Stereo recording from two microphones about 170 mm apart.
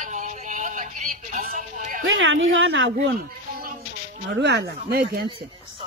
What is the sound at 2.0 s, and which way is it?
Speech, 90° right.